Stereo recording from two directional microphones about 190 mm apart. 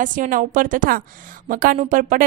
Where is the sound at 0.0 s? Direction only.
45° right (ahead or behind).